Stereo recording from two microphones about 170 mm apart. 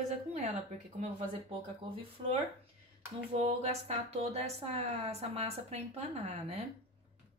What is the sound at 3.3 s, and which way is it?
A woman's voice, 40° right (ahead or behind).